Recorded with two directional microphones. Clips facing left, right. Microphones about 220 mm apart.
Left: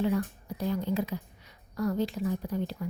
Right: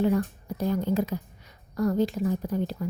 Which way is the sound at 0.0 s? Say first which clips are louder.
Right 4 dB; 45° right (ahead or behind).